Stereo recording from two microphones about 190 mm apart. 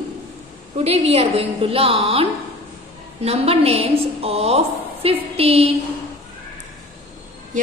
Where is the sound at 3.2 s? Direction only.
30° right (ahead or behind).